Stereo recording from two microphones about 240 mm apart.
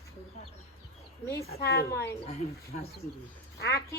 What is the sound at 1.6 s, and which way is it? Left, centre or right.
Speech, left.